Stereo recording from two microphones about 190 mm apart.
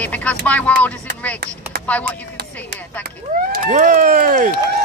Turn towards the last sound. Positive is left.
turn(degrees=-45)  # may be behind; listen again after turning